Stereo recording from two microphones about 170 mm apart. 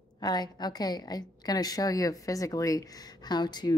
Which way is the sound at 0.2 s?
25° left (ahead or behind).